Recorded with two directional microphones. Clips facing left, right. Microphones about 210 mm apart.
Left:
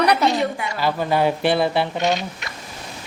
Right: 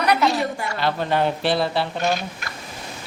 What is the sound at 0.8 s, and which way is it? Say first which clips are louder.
Speech: left 2 dB; 10° left (ahead or behind).